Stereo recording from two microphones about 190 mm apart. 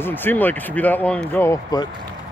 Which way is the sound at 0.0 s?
10° left (ahead or behind).